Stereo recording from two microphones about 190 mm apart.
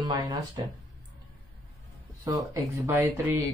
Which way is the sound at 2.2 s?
20° right (ahead or behind).